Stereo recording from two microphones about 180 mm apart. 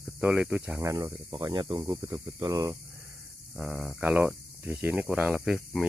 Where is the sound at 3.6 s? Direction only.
10° right (ahead or behind).